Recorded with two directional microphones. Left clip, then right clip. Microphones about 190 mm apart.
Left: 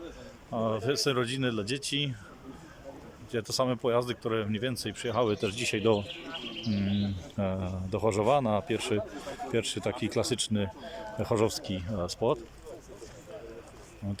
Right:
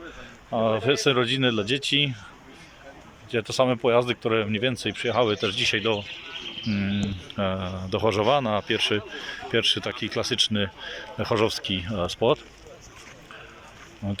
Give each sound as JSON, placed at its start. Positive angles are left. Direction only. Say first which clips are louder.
{"t": 0.5, "sound": "a man's voice", "louder": "right 7 dB", "side_deg": 5}
{"t": 3.3, "sound": "a man's voice", "louder": "right 7 dB", "side_deg": 10}
{"t": 6.7, "sound": "a man's voice", "louder": "right 4 dB", "side_deg": 10}
{"t": 14.0, "sound": "speech", "louder": "right 7 dB", "side_deg": -5}